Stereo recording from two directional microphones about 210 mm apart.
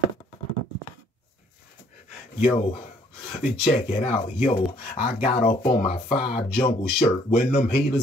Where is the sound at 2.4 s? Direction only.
30° left (ahead or behind).